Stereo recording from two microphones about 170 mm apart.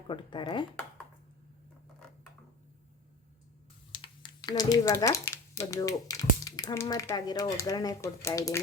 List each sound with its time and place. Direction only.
0.1 s speech: 30° left (ahead or behind)
3.9 s speech: 30° left (ahead or behind)